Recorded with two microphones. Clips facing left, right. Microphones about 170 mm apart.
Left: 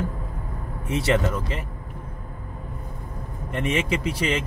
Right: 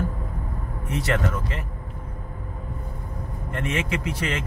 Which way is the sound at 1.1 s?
20° left (ahead or behind).